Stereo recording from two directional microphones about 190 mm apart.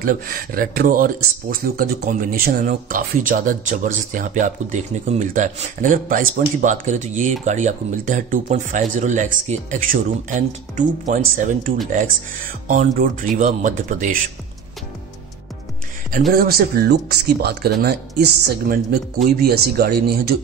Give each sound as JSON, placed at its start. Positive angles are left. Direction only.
{"t": 0.0, "sound": "speech", "side_deg": -50}
{"t": 16.3, "sound": "speech", "side_deg": -50}